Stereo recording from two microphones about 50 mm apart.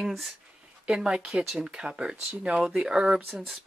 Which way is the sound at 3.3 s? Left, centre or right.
Centre.